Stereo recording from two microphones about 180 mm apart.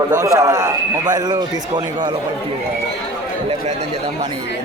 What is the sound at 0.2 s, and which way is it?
A man's voice, 20° right (ahead or behind).